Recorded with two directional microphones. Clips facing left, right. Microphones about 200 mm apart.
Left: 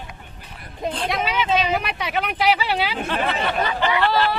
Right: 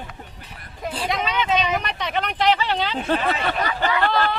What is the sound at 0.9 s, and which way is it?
Speech, 5° right (ahead or behind).